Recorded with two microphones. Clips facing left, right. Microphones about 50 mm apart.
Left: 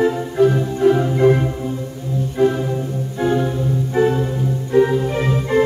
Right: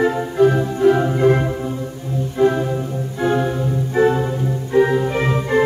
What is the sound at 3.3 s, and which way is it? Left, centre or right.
Organ, centre.